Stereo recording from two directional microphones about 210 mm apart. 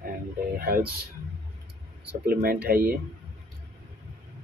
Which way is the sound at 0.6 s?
45° right (ahead or behind).